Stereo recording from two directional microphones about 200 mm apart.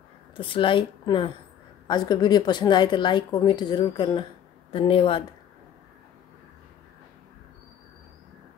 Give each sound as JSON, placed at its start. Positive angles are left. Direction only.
{"t": 0.4, "sound": "speech", "side_deg": 25}